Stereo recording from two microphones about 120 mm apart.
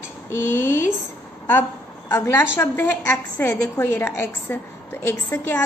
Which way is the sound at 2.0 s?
20° left (ahead or behind).